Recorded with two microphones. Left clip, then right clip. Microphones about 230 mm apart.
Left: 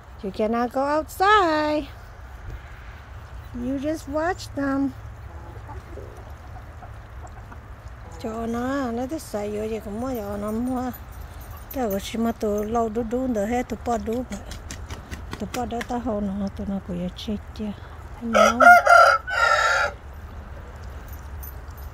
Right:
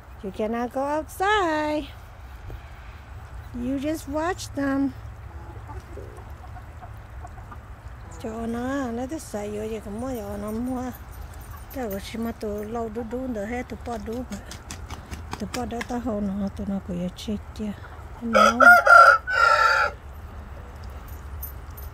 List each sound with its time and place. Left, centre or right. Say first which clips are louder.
0.2 s a woman's voice: left 4 dB; centre
3.6 s speech: left 1 dB; centre
8.2 s a woman's voice: left 3 dB; centre
18.7 s chicken: right 1 dB; left